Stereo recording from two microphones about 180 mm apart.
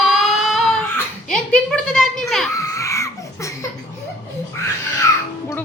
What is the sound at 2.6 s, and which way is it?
Crying, 15° left (ahead or behind).